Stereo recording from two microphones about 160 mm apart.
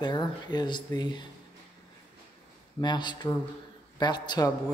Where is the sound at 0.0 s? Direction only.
25° left (ahead or behind).